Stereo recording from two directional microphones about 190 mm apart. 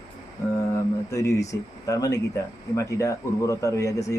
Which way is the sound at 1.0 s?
15° left (ahead or behind).